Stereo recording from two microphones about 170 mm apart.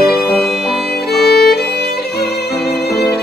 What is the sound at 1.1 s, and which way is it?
Violin, 70° left (ahead or behind).